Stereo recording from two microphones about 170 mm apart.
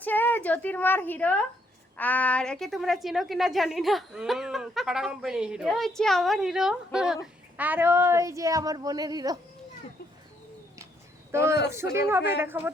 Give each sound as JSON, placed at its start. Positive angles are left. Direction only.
{"t": 0.0, "sound": "a woman's voice", "side_deg": 10}
{"t": 11.3, "sound": "a man's voice", "side_deg": -15}